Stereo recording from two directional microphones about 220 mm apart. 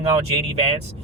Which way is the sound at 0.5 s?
25° right (ahead or behind).